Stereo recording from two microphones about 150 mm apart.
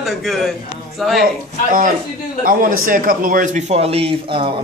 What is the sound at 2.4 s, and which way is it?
A man's voice, 65° right (ahead or behind).